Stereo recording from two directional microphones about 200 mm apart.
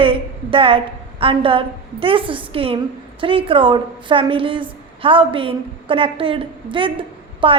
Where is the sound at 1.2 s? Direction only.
25° right (ahead or behind).